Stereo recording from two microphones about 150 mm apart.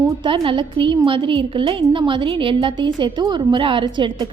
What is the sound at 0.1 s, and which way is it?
A woman's voice, 35° right (ahead or behind).